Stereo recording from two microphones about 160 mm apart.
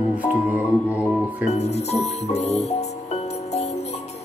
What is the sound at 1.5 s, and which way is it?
Music, 45° left (ahead or behind).